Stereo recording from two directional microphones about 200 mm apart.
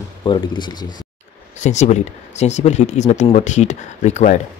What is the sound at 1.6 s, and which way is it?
Speech, 35° left (ahead or behind).